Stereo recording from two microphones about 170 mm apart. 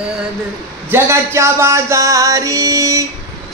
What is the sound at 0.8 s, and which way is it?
Music, 15° right (ahead or behind).